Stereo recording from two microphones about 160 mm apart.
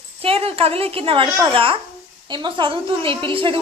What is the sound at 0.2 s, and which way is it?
A woman's voice, 35° right (ahead or behind).